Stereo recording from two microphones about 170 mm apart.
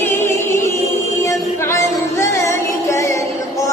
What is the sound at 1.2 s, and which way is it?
Music, 15° left (ahead or behind).